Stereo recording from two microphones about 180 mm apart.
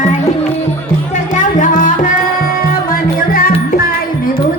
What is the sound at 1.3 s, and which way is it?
Music, 45° left (ahead or behind).